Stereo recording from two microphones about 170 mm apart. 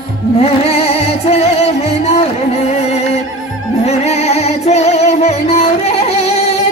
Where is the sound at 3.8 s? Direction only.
40° left (ahead or behind).